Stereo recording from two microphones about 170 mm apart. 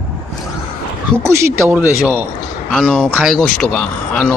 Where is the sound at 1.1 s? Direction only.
15° right (ahead or behind).